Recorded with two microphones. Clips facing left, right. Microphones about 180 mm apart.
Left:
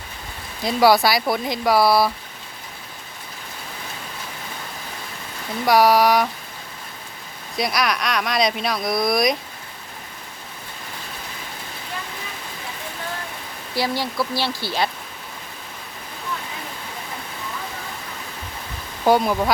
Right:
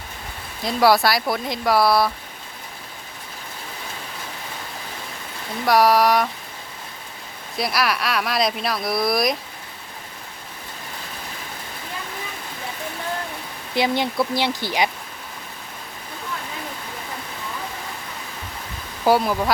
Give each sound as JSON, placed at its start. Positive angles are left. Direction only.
{"t": 0.6, "sound": "speech", "side_deg": 0}
{"t": 5.6, "sound": "speech", "side_deg": 0}
{"t": 7.5, "sound": "speech", "side_deg": 0}
{"t": 13.7, "sound": "speech", "side_deg": -20}
{"t": 19.0, "sound": "speech", "side_deg": -5}